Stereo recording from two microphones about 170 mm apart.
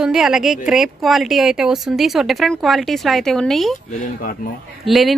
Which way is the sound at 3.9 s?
50° left (ahead or behind).